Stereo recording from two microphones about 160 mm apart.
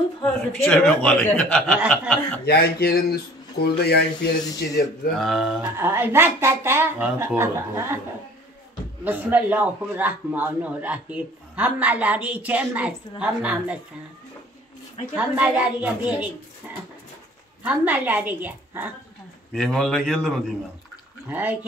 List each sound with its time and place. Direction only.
0.7 s speech: 5° left (ahead or behind)
2.4 s speech: 75° left (ahead or behind)
4.6 s speech: 90° left
5.1 s a man's voice: centre (ahead or behind)
5.8 s speech: 15° right (ahead or behind)
9.0 s speech: 10° right (ahead or behind)
15.1 s speech: 10° right (ahead or behind)
19.5 s a man's voice: centre (ahead or behind)
21.3 s speech: 10° right (ahead or behind)